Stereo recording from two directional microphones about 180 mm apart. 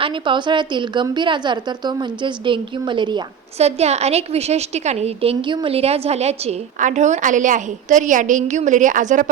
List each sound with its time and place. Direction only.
0.0 s a woman's voice: 25° right (ahead or behind)
3.6 s a woman's voice: 35° right (ahead or behind)